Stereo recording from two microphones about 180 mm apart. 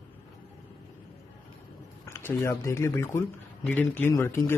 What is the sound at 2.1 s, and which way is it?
Speech, 15° left (ahead or behind).